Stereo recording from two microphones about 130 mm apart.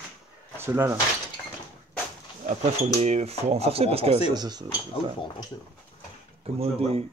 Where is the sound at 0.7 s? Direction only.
20° right (ahead or behind).